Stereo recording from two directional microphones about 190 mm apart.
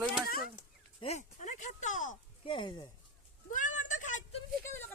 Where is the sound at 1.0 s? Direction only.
35° left (ahead or behind).